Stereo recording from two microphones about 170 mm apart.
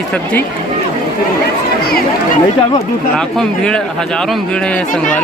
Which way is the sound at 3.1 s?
5° left (ahead or behind).